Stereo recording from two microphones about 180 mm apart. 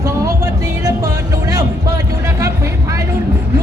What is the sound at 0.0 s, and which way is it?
Music, 20° right (ahead or behind).